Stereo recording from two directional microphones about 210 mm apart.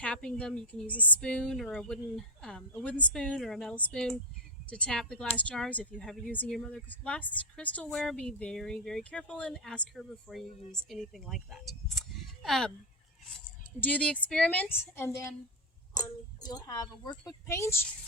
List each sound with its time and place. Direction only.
0.0 s speech: 5° left (ahead or behind)
13.8 s speech: 5° left (ahead or behind)